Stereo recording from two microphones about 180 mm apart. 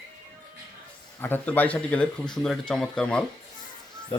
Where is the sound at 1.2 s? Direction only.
10° left (ahead or behind).